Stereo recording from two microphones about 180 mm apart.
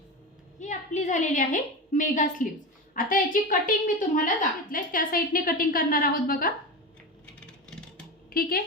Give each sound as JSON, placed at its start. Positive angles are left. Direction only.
{"t": 0.6, "sound": "a woman's voice", "side_deg": 40}
{"t": 8.3, "sound": "speech", "side_deg": 55}